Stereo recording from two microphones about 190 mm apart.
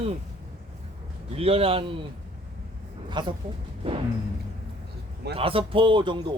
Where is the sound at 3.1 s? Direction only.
25° right (ahead or behind).